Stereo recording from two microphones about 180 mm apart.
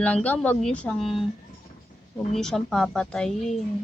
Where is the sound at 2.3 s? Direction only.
5° left (ahead or behind).